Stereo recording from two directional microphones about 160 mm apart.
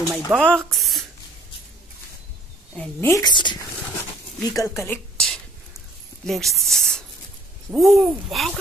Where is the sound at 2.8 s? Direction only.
15° left (ahead or behind).